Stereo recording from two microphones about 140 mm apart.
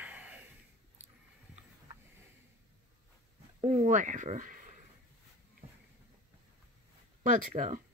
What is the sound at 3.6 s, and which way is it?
Speech, 55° right (ahead or behind).